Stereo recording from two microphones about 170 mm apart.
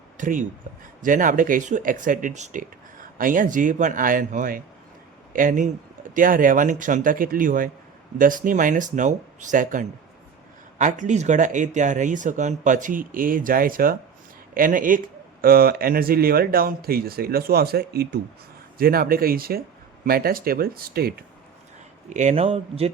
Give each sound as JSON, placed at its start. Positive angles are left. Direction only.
{"t": 0.2, "sound": "speech", "side_deg": -50}
{"t": 22.1, "sound": "speech", "side_deg": -45}